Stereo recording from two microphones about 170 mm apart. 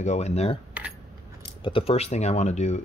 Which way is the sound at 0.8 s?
10° right (ahead or behind).